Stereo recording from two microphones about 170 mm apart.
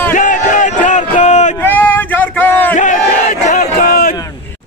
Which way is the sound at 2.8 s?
45° left (ahead or behind).